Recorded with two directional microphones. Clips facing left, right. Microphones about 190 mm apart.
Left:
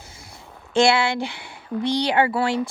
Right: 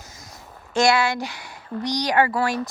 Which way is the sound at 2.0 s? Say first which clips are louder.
Right 2 dB; 20° left (ahead or behind).